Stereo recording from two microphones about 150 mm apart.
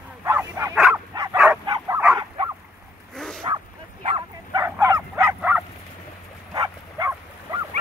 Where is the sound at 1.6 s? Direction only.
25° right (ahead or behind).